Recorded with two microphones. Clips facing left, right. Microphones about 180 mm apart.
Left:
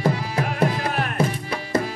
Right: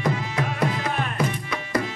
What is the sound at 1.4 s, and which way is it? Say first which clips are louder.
Music: left 2 dB; 35° left (ahead or behind).